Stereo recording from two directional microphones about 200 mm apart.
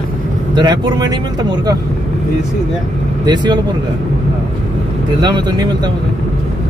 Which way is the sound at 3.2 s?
20° right (ahead or behind).